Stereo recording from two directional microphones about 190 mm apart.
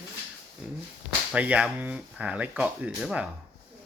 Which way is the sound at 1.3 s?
5° right (ahead or behind).